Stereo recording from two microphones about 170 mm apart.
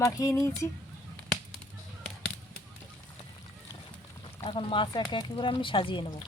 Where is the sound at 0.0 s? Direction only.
20° left (ahead or behind).